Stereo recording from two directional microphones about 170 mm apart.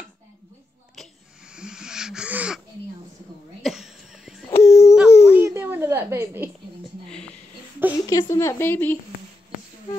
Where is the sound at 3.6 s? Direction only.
Centre (ahead or behind).